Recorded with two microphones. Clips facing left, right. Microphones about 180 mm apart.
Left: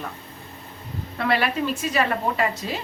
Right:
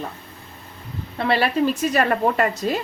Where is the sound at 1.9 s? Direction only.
50° right (ahead or behind).